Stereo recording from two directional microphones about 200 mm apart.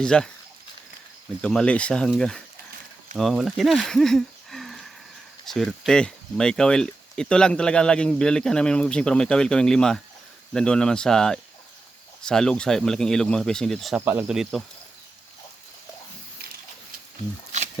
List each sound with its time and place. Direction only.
0.0 s speech: 5° left (ahead or behind)
1.4 s speech: 5° left (ahead or behind)